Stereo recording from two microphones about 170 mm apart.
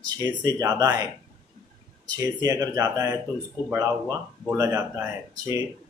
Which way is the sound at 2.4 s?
20° right (ahead or behind).